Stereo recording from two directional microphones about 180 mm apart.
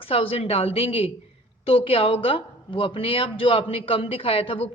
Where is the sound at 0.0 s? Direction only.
30° left (ahead or behind).